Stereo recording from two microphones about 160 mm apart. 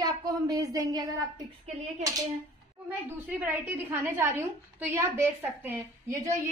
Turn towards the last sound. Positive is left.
turn(degrees=-20)  # may be behind; listen again after turning